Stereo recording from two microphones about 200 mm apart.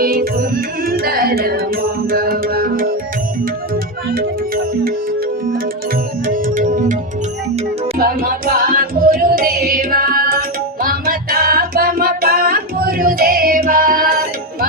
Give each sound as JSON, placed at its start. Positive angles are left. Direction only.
{"t": 0.0, "sound": "music", "side_deg": -45}
{"t": 4.1, "sound": "music", "side_deg": -50}
{"t": 6.2, "sound": "music", "side_deg": -45}
{"t": 7.9, "sound": "music", "side_deg": -45}